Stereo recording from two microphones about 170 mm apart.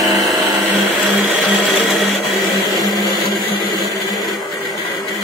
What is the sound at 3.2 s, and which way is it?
Blender, 25° left (ahead or behind).